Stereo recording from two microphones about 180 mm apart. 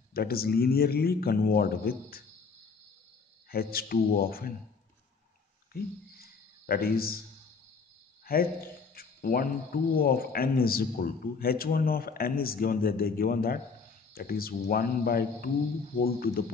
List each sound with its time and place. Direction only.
0.1 s a man's voice: 55° left (ahead or behind)
3.4 s a man's voice: 55° left (ahead or behind)
5.7 s a sound: 55° left (ahead or behind)
8.3 s a man's voice: 55° left (ahead or behind)